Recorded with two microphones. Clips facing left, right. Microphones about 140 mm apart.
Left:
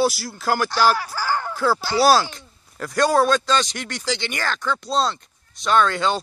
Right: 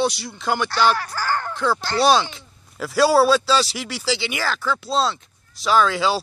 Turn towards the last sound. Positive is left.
turn(degrees=-5)  # may be behind; listen again after turning